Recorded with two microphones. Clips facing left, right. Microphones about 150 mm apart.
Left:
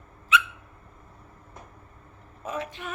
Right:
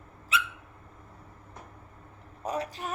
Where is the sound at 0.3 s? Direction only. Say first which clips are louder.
Left 6 dB; 35° right (ahead or behind).